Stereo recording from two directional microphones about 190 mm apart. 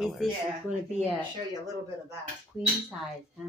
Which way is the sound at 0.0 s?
Centre (ahead or behind).